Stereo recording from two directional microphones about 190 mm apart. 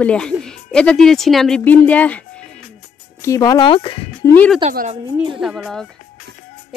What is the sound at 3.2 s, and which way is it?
Speech, 20° left (ahead or behind).